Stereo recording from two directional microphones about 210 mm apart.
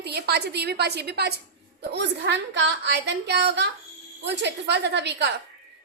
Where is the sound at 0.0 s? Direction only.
50° right (ahead or behind).